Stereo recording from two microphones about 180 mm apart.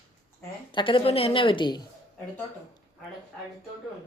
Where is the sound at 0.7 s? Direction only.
30° left (ahead or behind).